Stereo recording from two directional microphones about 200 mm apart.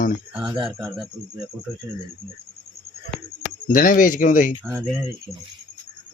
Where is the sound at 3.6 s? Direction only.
45° left (ahead or behind).